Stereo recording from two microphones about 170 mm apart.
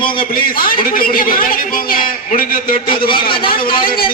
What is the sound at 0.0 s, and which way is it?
Speech, 30° left (ahead or behind).